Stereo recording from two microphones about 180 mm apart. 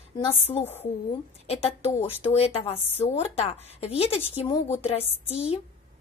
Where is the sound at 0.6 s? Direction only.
10° left (ahead or behind).